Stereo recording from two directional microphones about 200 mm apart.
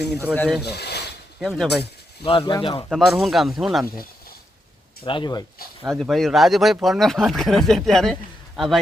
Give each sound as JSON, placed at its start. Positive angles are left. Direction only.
{"t": 0.3, "sound": "speech", "side_deg": 5}
{"t": 0.6, "sound": "speech", "side_deg": 55}
{"t": 1.4, "sound": "speech", "side_deg": 0}
{"t": 2.2, "sound": "speech", "side_deg": 25}
{"t": 2.9, "sound": "speech", "side_deg": 0}
{"t": 5.0, "sound": "speech", "side_deg": 25}
{"t": 5.8, "sound": "a man's voice", "side_deg": 0}